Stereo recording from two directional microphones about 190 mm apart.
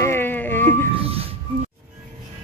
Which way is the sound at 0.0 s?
10° left (ahead or behind).